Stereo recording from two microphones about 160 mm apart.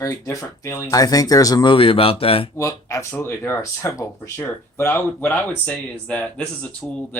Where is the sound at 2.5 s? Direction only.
20° left (ahead or behind).